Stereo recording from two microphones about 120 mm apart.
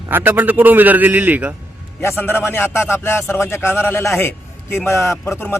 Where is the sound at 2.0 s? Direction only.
20° left (ahead or behind).